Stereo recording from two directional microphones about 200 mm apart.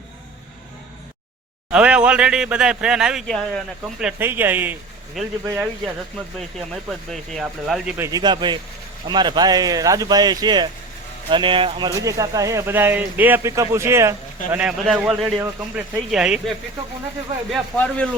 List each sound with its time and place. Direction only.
1.7 s a man's voice: 5° right (ahead or behind)
4.0 s speech: 10° right (ahead or behind)
7.1 s a man's voice: centre (ahead or behind)